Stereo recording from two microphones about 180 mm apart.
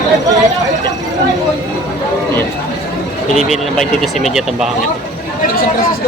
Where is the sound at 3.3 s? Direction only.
Centre (ahead or behind).